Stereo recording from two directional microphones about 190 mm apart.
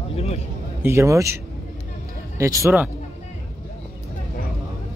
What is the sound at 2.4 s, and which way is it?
Speech, 15° right (ahead or behind).